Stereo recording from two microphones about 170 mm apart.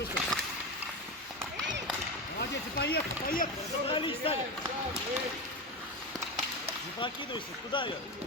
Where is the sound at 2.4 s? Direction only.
70° left (ahead or behind).